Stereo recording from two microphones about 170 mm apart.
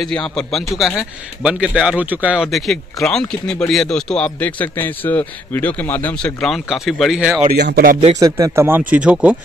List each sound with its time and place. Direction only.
0.0 s speech: 5° left (ahead or behind)
7.5 s speech: 75° right (ahead or behind)
8.2 s speech: 15° right (ahead or behind)